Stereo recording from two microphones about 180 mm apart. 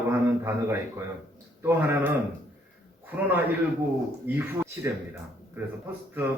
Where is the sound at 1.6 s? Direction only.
15° right (ahead or behind).